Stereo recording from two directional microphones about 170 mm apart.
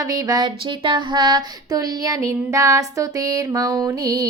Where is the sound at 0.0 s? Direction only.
20° right (ahead or behind).